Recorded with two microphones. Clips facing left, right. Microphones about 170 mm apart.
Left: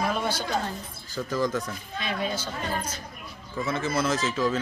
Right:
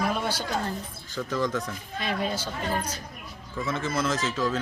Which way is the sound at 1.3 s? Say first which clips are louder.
Left 1 dB; centre (ahead or behind).